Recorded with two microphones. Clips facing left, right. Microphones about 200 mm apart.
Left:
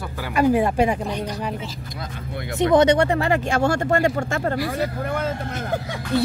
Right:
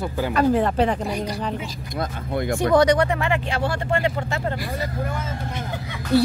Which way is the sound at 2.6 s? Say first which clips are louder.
Left 2 dB; 20° left (ahead or behind).